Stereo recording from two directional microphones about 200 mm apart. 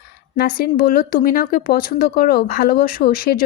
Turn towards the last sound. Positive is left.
turn(degrees=50)  # may be behind; listen again after turning